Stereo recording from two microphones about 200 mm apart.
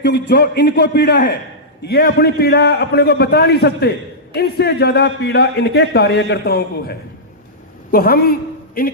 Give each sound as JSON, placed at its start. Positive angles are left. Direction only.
{"t": 0.0, "sound": "a man's voice", "side_deg": 55}